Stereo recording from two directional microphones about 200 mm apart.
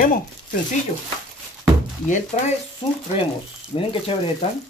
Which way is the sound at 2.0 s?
40° left (ahead or behind).